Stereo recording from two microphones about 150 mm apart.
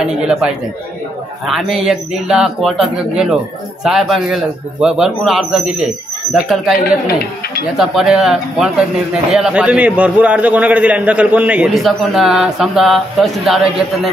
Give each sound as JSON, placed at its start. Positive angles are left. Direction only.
{"t": 0.0, "sound": "a man's voice", "side_deg": -5}